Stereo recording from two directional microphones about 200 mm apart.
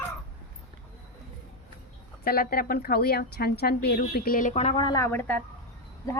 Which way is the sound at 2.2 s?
50° left (ahead or behind).